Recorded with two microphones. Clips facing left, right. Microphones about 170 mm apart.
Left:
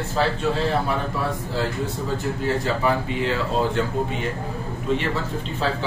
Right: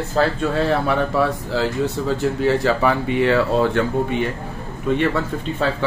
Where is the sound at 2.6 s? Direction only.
70° right (ahead or behind).